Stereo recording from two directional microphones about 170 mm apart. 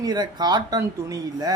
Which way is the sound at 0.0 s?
25° right (ahead or behind).